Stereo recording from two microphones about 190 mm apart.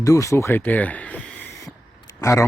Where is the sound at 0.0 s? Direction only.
15° left (ahead or behind).